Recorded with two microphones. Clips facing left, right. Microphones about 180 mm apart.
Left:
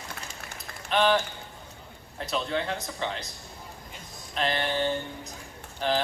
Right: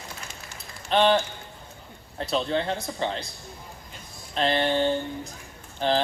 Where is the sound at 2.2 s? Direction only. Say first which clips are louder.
Right 4 dB; 30° right (ahead or behind).